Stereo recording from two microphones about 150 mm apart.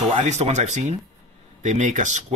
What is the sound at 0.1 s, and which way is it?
Speech, 45° right (ahead or behind).